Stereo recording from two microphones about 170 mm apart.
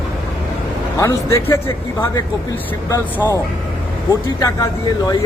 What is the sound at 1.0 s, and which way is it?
Speech, 20° left (ahead or behind).